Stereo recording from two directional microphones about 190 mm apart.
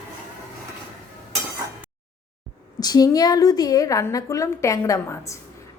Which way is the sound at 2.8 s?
20° left (ahead or behind).